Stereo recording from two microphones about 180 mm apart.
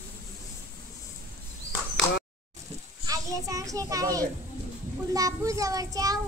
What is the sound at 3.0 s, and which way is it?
A child's voice, 20° right (ahead or behind).